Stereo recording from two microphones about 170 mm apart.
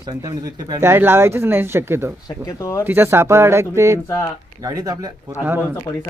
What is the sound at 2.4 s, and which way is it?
Speech, 20° left (ahead or behind).